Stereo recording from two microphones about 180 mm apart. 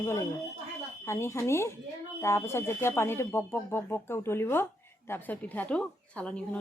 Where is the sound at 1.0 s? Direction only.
15° left (ahead or behind).